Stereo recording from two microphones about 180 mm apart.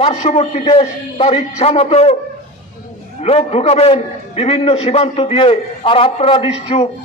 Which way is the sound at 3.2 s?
35° left (ahead or behind).